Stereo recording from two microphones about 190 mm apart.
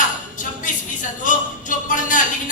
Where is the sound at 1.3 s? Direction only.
45° left (ahead or behind).